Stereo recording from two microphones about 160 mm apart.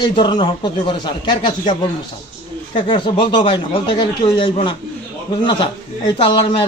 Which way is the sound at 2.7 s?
30° left (ahead or behind).